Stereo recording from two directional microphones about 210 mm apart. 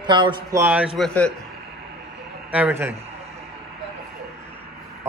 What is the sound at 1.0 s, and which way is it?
Speech, 5° left (ahead or behind).